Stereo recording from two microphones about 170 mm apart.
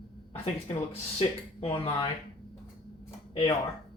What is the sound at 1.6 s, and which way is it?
Speech, 35° left (ahead or behind).